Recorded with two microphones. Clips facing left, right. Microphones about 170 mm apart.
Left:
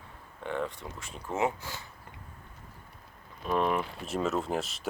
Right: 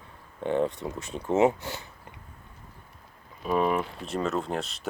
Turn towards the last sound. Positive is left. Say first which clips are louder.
# right 1 dB
turn(degrees=0)  # may be behind; listen again after turning